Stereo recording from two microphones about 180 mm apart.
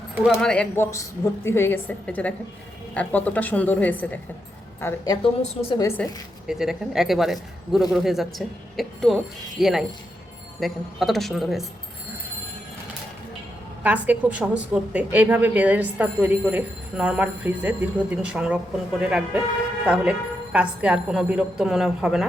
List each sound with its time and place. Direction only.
0.3 s a woman's voice: 5° left (ahead or behind)
0.9 s a woman's voice: 15° left (ahead or behind)
6.0 s a woman's voice: 5° left (ahead or behind)
13.8 s a woman's voice: 10° right (ahead or behind)